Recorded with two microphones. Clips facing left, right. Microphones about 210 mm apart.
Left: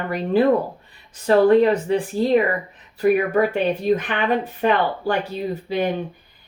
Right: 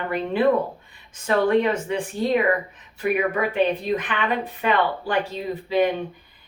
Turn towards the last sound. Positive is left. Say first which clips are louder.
# right 1 dB
turn(degrees=40)  # may be behind; listen again after turning